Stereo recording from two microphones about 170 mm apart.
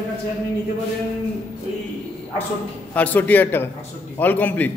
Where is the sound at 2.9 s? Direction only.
10° left (ahead or behind).